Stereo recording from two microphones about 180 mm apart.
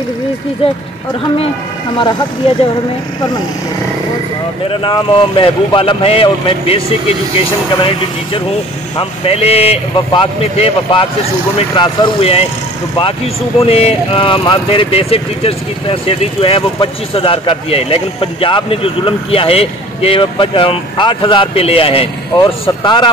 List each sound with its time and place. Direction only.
4.6 s speech: 30° left (ahead or behind)
9.2 s speech: 35° left (ahead or behind)